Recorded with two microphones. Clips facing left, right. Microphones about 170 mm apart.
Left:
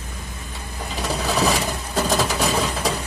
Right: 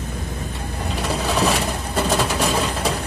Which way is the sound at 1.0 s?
Centre (ahead or behind).